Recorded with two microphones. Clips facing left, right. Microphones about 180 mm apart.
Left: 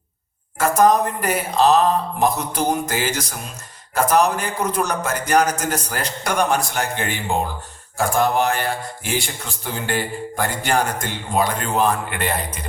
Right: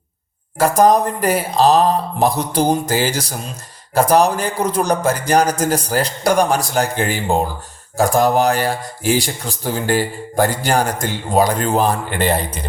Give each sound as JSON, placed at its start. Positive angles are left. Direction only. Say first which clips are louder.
{"t": 0.8, "sound": "speech", "louder": "right 2 dB", "side_deg": -35}